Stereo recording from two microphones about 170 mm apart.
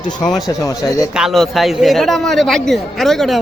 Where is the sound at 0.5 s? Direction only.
20° left (ahead or behind).